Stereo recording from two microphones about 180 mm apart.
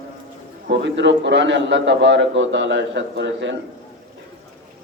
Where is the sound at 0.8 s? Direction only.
80° right.